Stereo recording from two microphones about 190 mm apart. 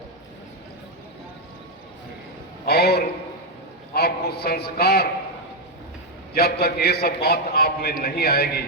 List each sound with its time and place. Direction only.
2.6 s a man's voice: 55° left (ahead or behind)
6.3 s a man's voice: 55° left (ahead or behind)